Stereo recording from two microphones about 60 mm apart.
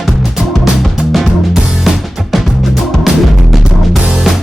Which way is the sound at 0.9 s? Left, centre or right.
Centre.